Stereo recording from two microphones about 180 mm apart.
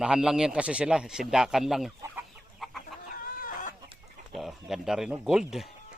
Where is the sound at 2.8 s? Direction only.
55° left (ahead or behind).